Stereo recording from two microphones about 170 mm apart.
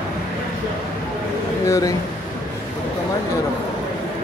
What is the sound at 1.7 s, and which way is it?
Speech, 20° left (ahead or behind).